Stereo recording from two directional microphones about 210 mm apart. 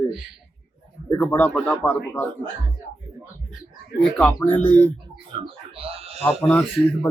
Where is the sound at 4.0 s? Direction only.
5° left (ahead or behind).